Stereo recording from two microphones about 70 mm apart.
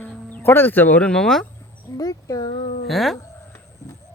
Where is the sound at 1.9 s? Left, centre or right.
Left.